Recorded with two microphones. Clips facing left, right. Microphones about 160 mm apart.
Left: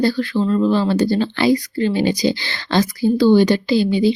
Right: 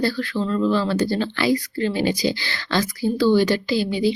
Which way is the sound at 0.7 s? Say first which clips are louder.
Left 4 dB; 20° left (ahead or behind).